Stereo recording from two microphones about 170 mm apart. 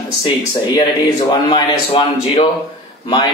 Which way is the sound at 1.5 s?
35° left (ahead or behind).